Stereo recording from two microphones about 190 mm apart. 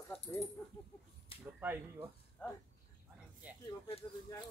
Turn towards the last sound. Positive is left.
turn(degrees=-5)  # may be behind; listen again after turning